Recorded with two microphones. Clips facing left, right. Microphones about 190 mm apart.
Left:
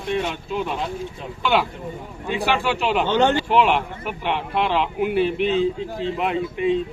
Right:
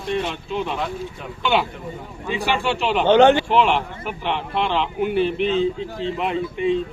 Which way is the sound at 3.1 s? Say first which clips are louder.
Right 8 dB; 65° right (ahead or behind).